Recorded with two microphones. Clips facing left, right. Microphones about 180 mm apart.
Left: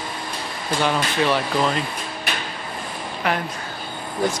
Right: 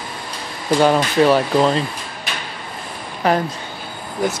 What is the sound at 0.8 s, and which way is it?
Speech, 40° right (ahead or behind).